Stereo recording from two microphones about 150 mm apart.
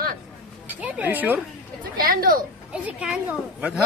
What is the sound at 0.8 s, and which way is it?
Speech, 10° right (ahead or behind).